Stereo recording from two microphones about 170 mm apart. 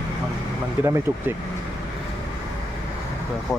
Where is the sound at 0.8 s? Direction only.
15° right (ahead or behind).